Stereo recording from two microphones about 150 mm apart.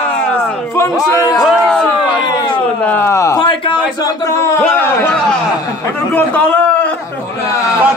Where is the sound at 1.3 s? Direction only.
5° left (ahead or behind).